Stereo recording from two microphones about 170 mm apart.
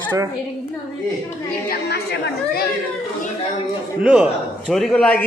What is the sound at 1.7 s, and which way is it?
Speech, 70° left (ahead or behind).